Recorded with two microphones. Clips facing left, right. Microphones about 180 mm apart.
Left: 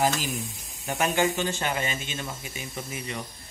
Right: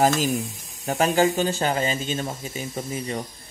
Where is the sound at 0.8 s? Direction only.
35° right (ahead or behind).